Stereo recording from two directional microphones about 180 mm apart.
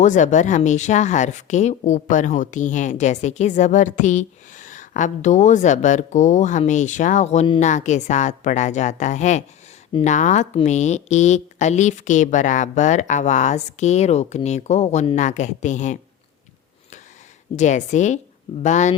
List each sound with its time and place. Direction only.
0.0 s speech: 40° left (ahead or behind)
17.6 s speech: 40° left (ahead or behind)